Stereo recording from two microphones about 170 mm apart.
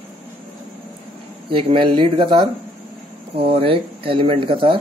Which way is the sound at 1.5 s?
30° right (ahead or behind).